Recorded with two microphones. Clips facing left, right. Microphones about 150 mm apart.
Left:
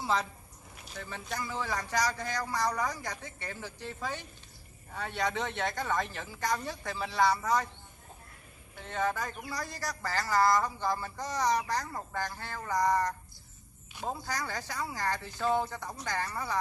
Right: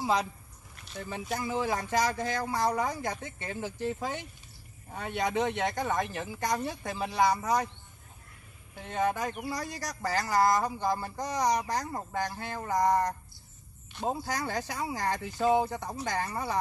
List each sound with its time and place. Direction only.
0.0 s speech: 15° right (ahead or behind)
8.8 s speech: 15° right (ahead or behind)